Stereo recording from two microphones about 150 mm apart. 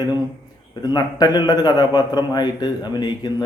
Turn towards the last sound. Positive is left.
turn(degrees=30)  # may be behind; listen again after turning